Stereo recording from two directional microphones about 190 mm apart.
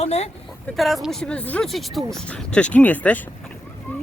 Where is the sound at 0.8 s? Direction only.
Centre (ahead or behind).